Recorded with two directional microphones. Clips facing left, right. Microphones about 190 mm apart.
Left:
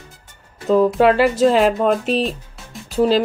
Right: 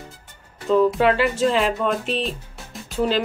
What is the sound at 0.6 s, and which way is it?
Speech, 40° left (ahead or behind).